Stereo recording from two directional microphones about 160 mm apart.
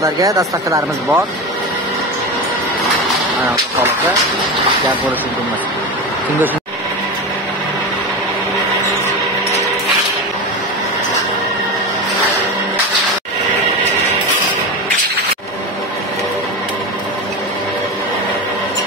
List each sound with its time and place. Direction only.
0.0 s speech: 20° right (ahead or behind)